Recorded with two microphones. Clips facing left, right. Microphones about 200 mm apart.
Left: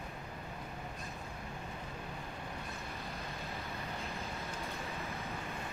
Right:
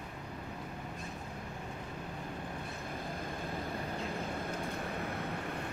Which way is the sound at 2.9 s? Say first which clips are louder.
Right 4 dB; 50° right (ahead or behind).